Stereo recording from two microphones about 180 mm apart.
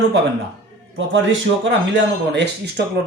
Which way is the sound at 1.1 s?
90° right.